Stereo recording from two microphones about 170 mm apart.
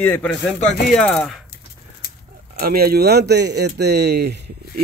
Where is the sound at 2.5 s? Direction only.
60° right (ahead or behind).